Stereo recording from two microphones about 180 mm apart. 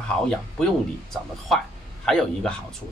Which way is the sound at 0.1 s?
5° left (ahead or behind).